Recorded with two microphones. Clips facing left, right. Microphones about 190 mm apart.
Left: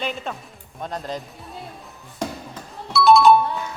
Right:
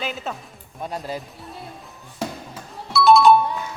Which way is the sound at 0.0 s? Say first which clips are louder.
Left 1 dB; centre (ahead or behind).